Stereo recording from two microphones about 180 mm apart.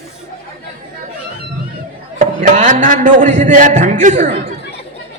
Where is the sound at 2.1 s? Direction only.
45° right (ahead or behind).